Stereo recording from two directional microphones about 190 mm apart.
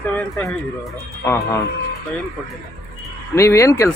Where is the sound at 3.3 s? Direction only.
15° left (ahead or behind).